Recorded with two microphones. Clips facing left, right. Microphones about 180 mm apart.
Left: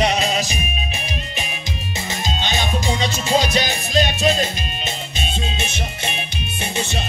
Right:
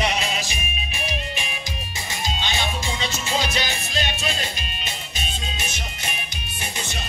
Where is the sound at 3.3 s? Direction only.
40° left (ahead or behind).